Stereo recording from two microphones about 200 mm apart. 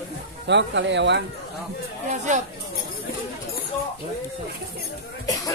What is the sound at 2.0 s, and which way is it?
Speech, 35° right (ahead or behind).